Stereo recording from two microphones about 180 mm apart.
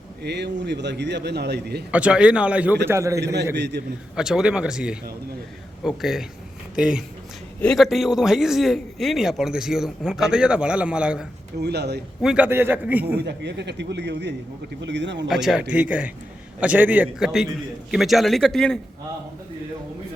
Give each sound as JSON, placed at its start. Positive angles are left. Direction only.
{"t": 0.2, "sound": "a man's voice", "side_deg": -70}
{"t": 1.9, "sound": "speech", "side_deg": -5}
{"t": 3.5, "sound": "a man's voice", "side_deg": -70}
{"t": 4.1, "sound": "a man's voice", "side_deg": -5}
{"t": 11.6, "sound": "a man's voice", "side_deg": -65}
{"t": 12.2, "sound": "speech", "side_deg": -5}
{"t": 13.1, "sound": "a man's voice", "side_deg": -70}
{"t": 15.3, "sound": "a man's voice", "side_deg": 0}